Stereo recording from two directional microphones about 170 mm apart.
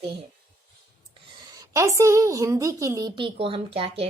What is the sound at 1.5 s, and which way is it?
A woman's voice, 20° right (ahead or behind).